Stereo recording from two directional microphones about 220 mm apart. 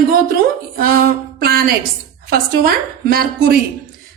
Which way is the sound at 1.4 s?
45° right (ahead or behind).